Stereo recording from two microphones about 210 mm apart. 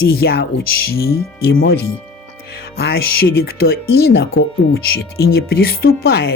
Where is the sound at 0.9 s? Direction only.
45° left (ahead or behind).